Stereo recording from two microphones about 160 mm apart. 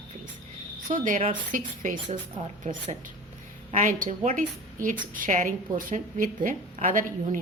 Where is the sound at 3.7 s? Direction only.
50° right (ahead or behind).